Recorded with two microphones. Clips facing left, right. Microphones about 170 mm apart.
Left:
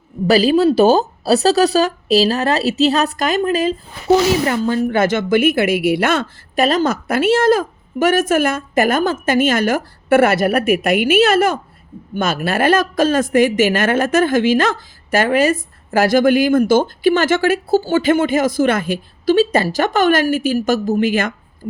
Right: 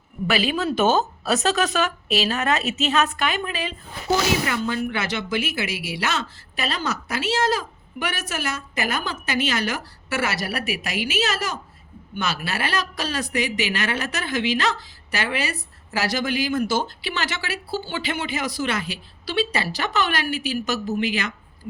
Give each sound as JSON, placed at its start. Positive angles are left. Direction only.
{"t": 0.3, "sound": "a woman's voice", "side_deg": 40}